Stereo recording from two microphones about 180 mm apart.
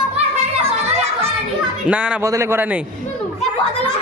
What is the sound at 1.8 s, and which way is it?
Speech, 5° right (ahead or behind).